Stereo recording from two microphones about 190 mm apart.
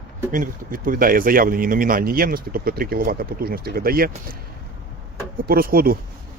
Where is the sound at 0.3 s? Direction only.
45° right (ahead or behind).